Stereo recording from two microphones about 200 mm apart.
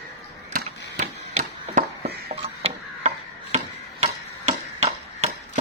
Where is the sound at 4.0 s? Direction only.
35° right (ahead or behind).